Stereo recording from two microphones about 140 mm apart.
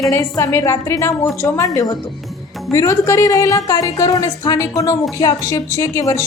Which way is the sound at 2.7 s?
20° left (ahead or behind).